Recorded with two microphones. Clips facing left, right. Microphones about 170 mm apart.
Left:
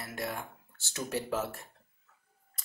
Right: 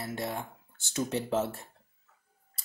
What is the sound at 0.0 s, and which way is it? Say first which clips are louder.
Speech: right 3 dB; 25° right (ahead or behind).